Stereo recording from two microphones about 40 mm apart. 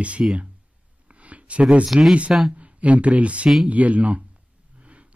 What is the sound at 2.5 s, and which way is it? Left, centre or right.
Speech, right.